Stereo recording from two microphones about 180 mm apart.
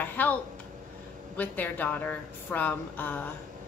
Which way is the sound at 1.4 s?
10° left (ahead or behind).